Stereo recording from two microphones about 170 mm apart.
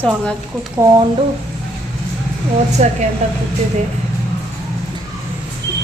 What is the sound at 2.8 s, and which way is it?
Speech, 45° right (ahead or behind).